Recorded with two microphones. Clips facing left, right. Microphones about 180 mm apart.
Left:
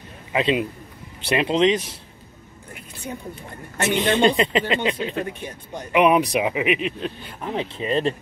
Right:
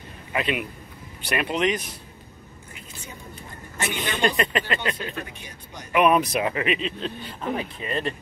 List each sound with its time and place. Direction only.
0.3 s a man's voice: 25° left (ahead or behind)
3.7 s a man's voice: 65° left (ahead or behind)
4.1 s speech: 25° left (ahead or behind)
7.5 s speech: 30° left (ahead or behind)